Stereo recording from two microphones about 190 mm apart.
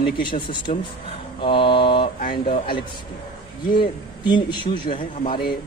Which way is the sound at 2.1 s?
45° left (ahead or behind).